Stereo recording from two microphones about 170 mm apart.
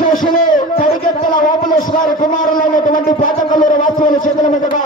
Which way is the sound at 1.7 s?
50° left (ahead or behind).